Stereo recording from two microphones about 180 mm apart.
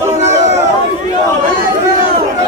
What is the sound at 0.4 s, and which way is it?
Chatter, 40° right (ahead or behind).